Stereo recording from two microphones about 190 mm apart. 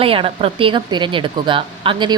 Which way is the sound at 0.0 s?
30° right (ahead or behind).